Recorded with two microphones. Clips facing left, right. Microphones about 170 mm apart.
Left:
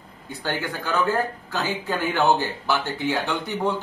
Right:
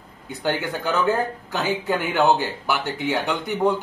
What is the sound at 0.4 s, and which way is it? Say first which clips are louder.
Speech: right 4 dB; 15° right (ahead or behind).